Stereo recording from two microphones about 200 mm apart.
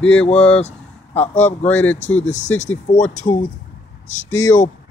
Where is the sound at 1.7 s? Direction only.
10° left (ahead or behind).